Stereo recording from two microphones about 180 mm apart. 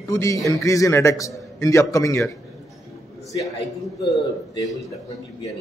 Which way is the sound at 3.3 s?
20° left (ahead or behind).